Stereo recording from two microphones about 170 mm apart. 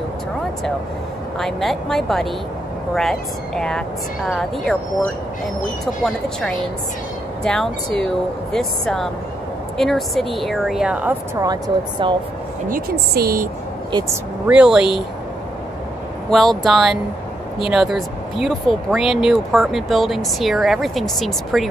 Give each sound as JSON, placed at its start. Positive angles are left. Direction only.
{"t": 1.4, "sound": "speech", "side_deg": 0}
{"t": 7.4, "sound": "speech", "side_deg": 5}
{"t": 11.4, "sound": "speech", "side_deg": -25}
{"t": 12.6, "sound": "speech", "side_deg": -60}
{"t": 14.5, "sound": "speech", "side_deg": -5}
{"t": 16.3, "sound": "speech", "side_deg": 0}